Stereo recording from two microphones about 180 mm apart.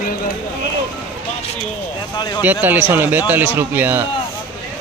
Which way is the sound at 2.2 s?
25° left (ahead or behind).